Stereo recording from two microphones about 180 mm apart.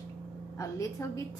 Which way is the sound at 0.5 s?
15° left (ahead or behind).